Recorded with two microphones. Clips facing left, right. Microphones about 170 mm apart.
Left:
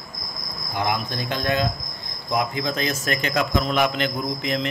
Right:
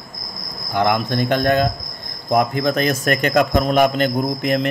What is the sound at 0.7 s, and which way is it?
A man's voice, 65° right (ahead or behind).